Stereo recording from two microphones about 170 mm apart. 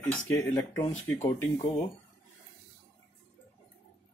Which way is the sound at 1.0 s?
10° left (ahead or behind).